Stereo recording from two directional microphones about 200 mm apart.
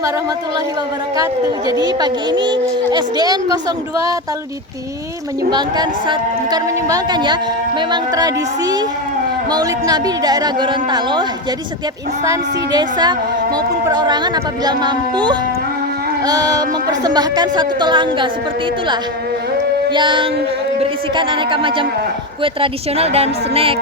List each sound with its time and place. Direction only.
1.1 s a woman's voice: 20° right (ahead or behind)
5.5 s a woman's voice: 20° right (ahead or behind)
19.9 s a woman's voice: 25° right (ahead or behind)